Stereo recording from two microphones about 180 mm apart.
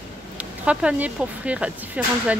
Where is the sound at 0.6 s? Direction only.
10° right (ahead or behind).